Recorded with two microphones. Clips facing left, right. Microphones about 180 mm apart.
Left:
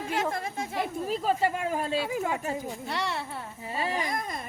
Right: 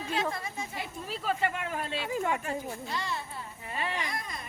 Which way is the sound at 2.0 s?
10° left (ahead or behind).